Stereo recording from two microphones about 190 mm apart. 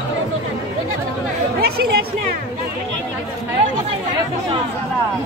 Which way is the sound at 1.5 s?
55° right (ahead or behind).